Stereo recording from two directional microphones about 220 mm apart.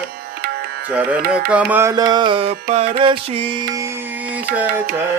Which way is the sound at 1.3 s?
5° right (ahead or behind).